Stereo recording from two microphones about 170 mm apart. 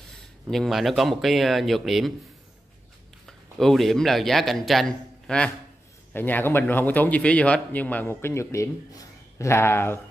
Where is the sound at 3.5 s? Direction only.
Centre (ahead or behind).